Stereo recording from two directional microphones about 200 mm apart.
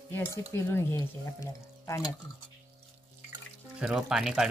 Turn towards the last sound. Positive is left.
turn(degrees=-5)  # may be behind; listen again after turning